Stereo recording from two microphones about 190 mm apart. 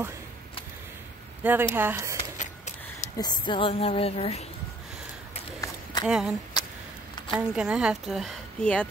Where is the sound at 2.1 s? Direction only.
40° left (ahead or behind).